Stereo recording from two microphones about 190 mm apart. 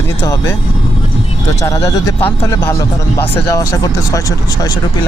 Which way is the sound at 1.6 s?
15° left (ahead or behind).